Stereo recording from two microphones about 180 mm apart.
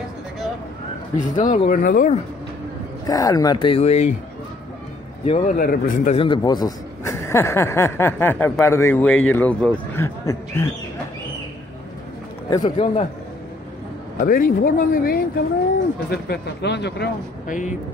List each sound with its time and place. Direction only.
1.1 s speech: 45° left (ahead or behind)
3.1 s speech: 20° left (ahead or behind)
5.2 s a man's voice: 30° left (ahead or behind)
5.5 s speech: 50° left (ahead or behind)
6.1 s a man's voice: 25° left (ahead or behind)
12.4 s speech: 25° left (ahead or behind)
14.2 s speech: 50° left (ahead or behind)
16.1 s speech: 70° left (ahead or behind)